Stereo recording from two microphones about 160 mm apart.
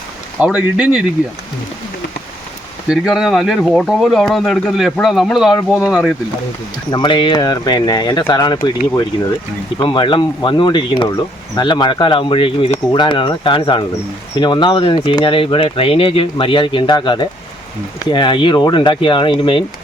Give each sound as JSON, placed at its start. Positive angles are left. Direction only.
{"t": 0.3, "sound": "speech", "side_deg": -5}
{"t": 2.9, "sound": "speech", "side_deg": -5}
{"t": 6.9, "sound": "speech", "side_deg": 30}
{"t": 9.8, "sound": "speech", "side_deg": 30}